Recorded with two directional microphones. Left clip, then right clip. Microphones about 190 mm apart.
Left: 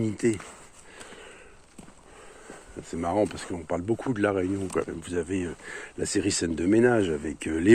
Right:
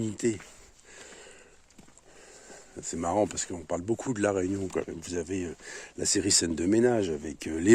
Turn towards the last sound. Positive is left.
turn(degrees=-30)  # may be behind; listen again after turning